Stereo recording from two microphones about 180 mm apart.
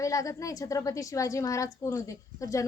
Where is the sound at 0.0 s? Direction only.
15° left (ahead or behind).